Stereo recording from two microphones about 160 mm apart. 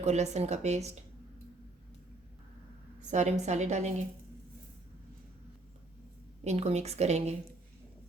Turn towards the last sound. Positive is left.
turn(degrees=-45)  # may be behind; listen again after turning